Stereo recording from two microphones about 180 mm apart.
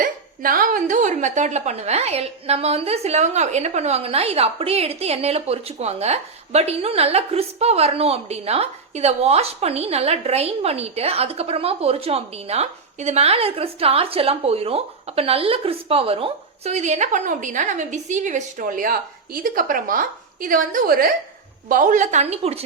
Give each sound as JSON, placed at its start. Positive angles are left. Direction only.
{"t": 0.0, "sound": "speech", "side_deg": -50}